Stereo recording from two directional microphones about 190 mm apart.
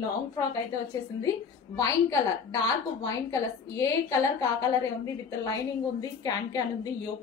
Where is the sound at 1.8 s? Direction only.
15° left (ahead or behind).